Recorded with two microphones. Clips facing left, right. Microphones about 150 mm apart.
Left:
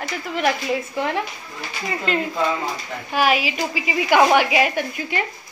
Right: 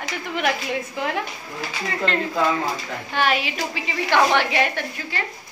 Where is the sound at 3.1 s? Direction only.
10° left (ahead or behind).